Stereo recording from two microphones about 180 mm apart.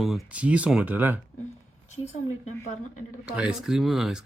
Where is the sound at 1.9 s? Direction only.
40° left (ahead or behind).